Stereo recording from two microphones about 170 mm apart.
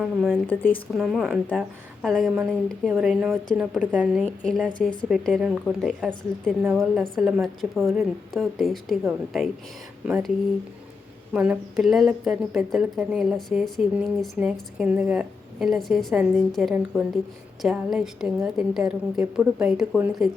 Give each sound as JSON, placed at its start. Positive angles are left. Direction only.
{"t": 0.0, "sound": "a woman's voice", "side_deg": -5}
{"t": 0.4, "sound": "speech", "side_deg": 10}
{"t": 0.9, "sound": "a woman's voice", "side_deg": 0}
{"t": 11.3, "sound": "a woman's voice", "side_deg": -5}